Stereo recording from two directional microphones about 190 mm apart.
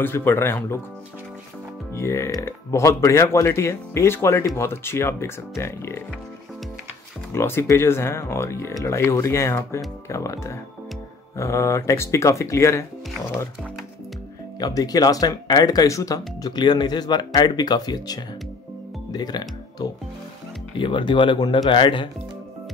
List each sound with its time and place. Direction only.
0.0 s speech: 10° left (ahead or behind)
2.0 s speech: 15° left (ahead or behind)
7.3 s speech: 15° left (ahead or behind)
14.6 s speech: 20° left (ahead or behind)